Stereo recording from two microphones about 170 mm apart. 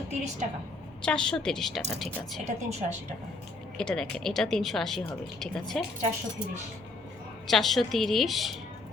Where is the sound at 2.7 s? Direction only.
40° right (ahead or behind).